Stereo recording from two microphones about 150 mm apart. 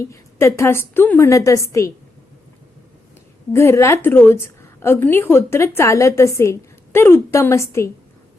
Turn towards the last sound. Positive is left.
turn(degrees=20)  # may be behind; listen again after turning